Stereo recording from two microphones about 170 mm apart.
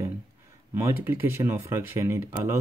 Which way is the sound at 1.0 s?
15° right (ahead or behind).